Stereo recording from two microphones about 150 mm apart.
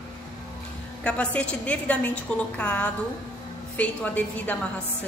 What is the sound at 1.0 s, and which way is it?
A woman's voice, 5° left (ahead or behind).